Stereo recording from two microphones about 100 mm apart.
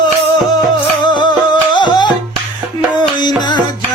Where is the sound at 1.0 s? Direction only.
50° left (ahead or behind).